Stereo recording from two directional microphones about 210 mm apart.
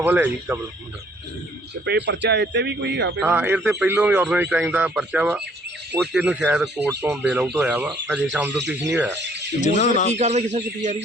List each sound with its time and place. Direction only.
0.0 s speech: 5° right (ahead or behind)
1.8 s speech: 55° right (ahead or behind)
3.2 s a man's voice: 5° right (ahead or behind)
9.6 s speech: 35° left (ahead or behind)
10.2 s a man's voice: 30° right (ahead or behind)